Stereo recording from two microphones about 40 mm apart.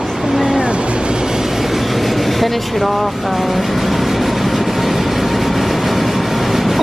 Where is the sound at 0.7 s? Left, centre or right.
Right.